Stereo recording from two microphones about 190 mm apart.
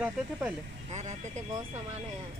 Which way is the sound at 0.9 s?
35° right (ahead or behind).